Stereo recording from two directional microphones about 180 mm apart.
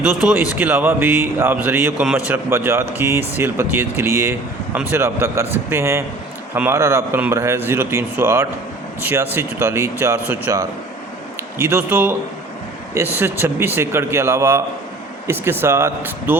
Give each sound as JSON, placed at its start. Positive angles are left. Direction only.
{"t": 0.2, "sound": "speech", "side_deg": -5}